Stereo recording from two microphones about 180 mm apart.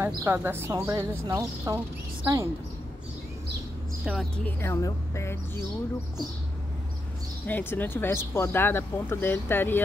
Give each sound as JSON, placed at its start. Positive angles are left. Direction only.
{"t": 0.0, "sound": "speech", "side_deg": -15}
{"t": 4.0, "sound": "speech", "side_deg": 0}
{"t": 4.6, "sound": "speech", "side_deg": 15}
{"t": 7.4, "sound": "speech", "side_deg": 10}